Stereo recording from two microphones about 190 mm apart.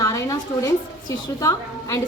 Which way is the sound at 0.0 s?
15° left (ahead or behind).